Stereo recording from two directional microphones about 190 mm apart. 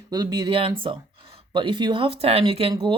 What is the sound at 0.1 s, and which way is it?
Speech, 20° right (ahead or behind).